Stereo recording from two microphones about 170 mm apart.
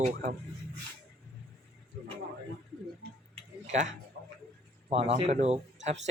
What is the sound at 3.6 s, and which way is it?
Tick-tock, 45° right (ahead or behind).